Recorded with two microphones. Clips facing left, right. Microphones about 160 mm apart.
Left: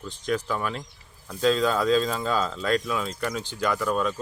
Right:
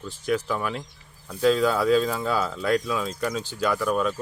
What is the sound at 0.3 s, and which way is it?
Speech, 15° right (ahead or behind).